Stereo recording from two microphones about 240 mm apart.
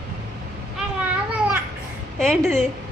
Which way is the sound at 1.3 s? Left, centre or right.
Centre.